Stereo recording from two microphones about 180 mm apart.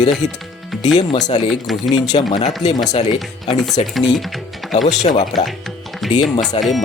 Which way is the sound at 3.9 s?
Centre (ahead or behind).